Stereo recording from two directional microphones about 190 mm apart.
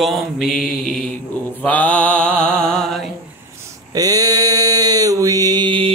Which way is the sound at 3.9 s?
20° right (ahead or behind).